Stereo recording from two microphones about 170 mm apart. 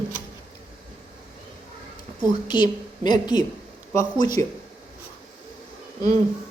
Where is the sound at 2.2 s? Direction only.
25° left (ahead or behind).